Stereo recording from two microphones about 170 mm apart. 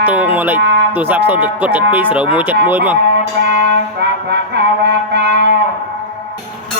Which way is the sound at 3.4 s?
85° right.